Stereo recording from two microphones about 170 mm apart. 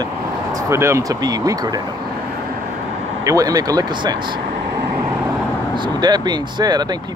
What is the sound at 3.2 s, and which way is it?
Speech, 20° right (ahead or behind).